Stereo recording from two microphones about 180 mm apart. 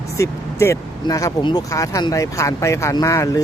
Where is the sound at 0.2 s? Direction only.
15° left (ahead or behind).